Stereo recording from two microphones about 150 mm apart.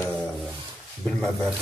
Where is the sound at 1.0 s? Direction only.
Centre (ahead or behind).